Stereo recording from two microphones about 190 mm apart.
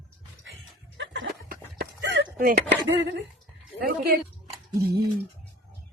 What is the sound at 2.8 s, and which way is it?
Speech, 75° right (ahead or behind).